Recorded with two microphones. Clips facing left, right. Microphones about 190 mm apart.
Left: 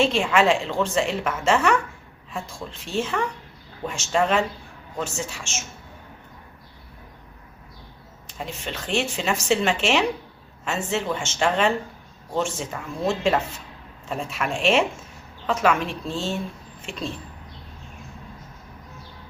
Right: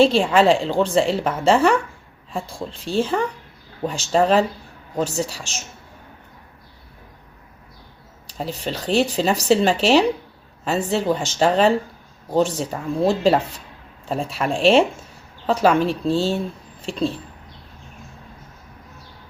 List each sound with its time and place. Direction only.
0.0 s a woman's voice: 35° right (ahead or behind)
8.3 s a woman's voice: 35° right (ahead or behind)